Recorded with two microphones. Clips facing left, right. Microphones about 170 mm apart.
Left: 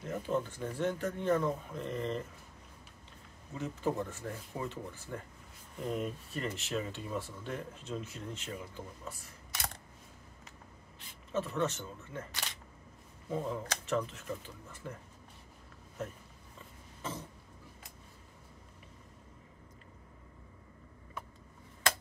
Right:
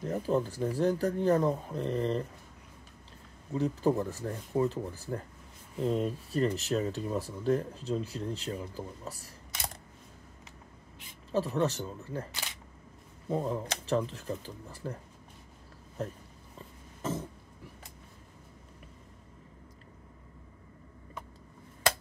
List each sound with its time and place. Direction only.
0.0 s speech: 35° right (ahead or behind)
3.5 s speech: 35° right (ahead or behind)
11.3 s speech: 35° right (ahead or behind)
13.3 s speech: 35° right (ahead or behind)
16.0 s speech: 35° right (ahead or behind)